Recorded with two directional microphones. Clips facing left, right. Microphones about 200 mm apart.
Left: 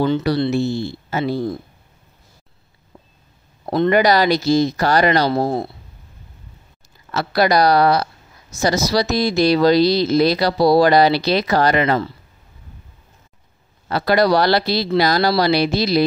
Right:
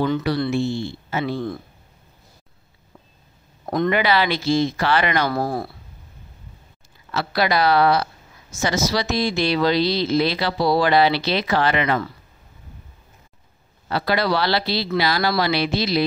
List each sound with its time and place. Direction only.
0.0 s speech: 35° left (ahead or behind)
3.9 s speech: 40° left (ahead or behind)
5.3 s speech: 25° left (ahead or behind)
7.1 s speech: 40° left (ahead or behind)
13.8 s speech: 45° left (ahead or behind)